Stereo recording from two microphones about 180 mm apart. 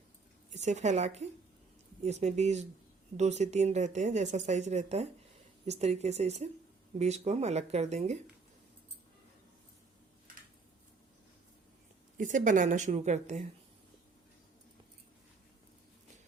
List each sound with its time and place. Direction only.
0.5 s speech: 40° right (ahead or behind)
12.1 s speech: 45° right (ahead or behind)